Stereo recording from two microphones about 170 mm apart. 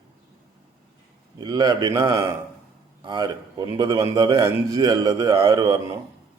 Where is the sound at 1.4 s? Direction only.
25° right (ahead or behind).